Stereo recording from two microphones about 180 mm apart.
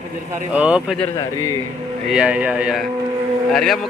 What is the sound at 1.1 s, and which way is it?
Speech, 20° left (ahead or behind).